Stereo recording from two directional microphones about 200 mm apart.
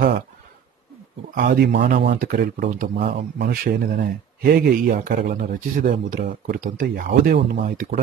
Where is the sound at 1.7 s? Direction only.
60° right (ahead or behind).